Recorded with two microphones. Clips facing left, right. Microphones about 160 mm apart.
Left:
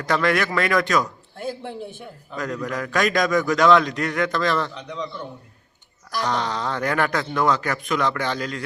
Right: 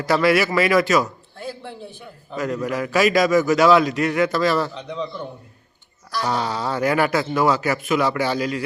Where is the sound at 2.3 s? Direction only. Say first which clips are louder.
Right 4 dB; 5° right (ahead or behind).